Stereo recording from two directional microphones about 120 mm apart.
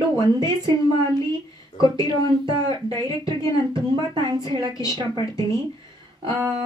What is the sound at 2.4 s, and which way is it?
Speech, 40° right (ahead or behind).